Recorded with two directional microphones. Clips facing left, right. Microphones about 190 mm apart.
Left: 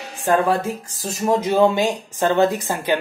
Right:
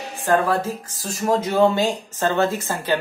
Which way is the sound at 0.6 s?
15° left (ahead or behind).